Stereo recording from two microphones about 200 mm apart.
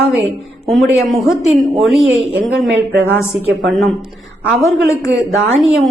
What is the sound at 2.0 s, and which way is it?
Speech, 75° right (ahead or behind).